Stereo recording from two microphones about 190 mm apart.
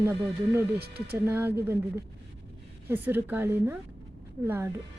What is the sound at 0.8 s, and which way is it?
Speech, 55° right (ahead or behind).